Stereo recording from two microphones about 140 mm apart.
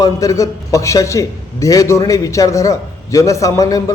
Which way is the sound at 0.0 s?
25° left (ahead or behind).